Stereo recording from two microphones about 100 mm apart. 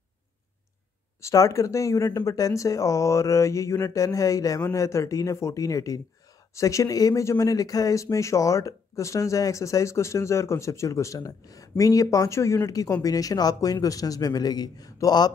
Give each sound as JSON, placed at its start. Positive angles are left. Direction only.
{"t": 1.2, "sound": "speech", "side_deg": 35}